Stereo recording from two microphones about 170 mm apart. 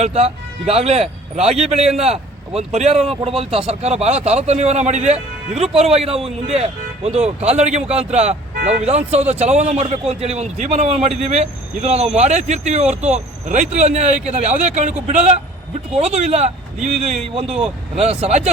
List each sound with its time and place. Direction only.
0.0 s speech: 40° right (ahead or behind)
7.8 s a man's voice: 5° right (ahead or behind)
8.1 s a man's voice: 40° right (ahead or behind)